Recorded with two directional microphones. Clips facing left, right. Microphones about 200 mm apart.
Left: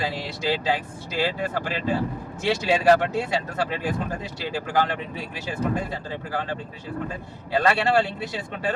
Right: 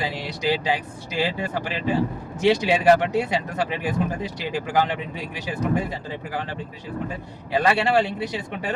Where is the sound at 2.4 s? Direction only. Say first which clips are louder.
Right 2 dB; 20° right (ahead or behind).